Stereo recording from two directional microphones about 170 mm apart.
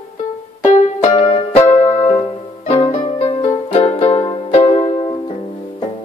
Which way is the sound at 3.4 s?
35° left (ahead or behind).